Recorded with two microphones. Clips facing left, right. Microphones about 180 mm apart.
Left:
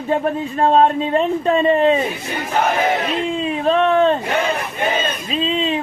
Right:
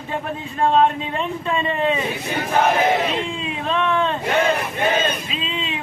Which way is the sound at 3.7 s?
45° left (ahead or behind).